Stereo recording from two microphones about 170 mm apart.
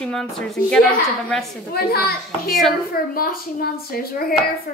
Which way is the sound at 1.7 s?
60° left (ahead or behind).